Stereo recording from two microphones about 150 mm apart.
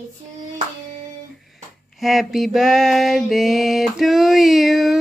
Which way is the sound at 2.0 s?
Centre (ahead or behind).